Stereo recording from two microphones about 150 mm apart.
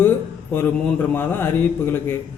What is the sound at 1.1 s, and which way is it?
A man's voice, 15° left (ahead or behind).